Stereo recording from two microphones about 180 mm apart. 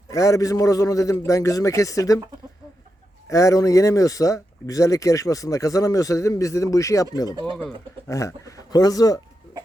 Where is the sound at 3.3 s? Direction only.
20° left (ahead or behind).